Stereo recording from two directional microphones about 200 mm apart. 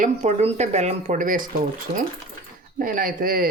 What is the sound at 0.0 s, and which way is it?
Speech, 35° right (ahead or behind).